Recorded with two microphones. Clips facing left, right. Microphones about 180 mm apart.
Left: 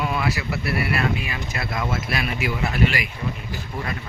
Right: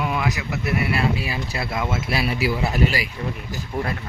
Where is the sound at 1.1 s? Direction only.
35° right (ahead or behind).